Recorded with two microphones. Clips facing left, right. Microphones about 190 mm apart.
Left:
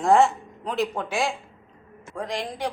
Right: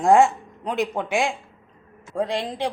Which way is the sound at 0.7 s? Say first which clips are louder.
Right 2 dB; 15° right (ahead or behind).